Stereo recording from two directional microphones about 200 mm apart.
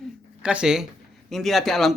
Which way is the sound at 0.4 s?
5° right (ahead or behind).